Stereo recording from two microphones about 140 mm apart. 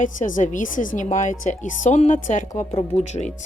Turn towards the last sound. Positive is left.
turn(degrees=55)  # may be behind; listen again after turning